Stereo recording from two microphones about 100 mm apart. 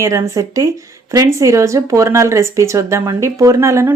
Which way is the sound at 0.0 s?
30° right (ahead or behind).